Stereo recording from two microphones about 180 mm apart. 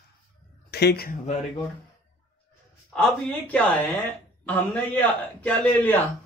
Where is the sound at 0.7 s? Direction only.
65° left (ahead or behind).